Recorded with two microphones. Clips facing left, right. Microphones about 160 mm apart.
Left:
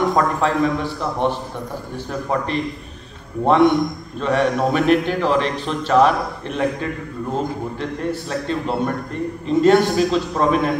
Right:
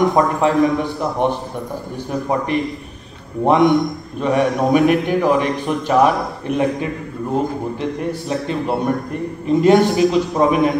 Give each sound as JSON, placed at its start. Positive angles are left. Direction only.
{"t": 0.1, "sound": "a man's voice", "side_deg": -15}
{"t": 8.1, "sound": "a man's voice", "side_deg": -15}